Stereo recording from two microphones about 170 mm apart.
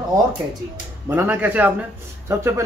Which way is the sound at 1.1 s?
10° right (ahead or behind).